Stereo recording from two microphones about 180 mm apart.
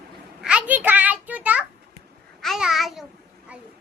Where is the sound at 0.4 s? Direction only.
5° right (ahead or behind).